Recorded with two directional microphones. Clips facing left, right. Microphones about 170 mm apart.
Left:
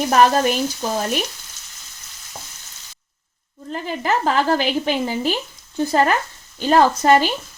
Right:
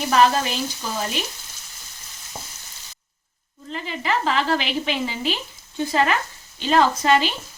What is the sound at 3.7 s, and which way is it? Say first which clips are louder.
A woman's voice: left 4 dB; 45° left (ahead or behind).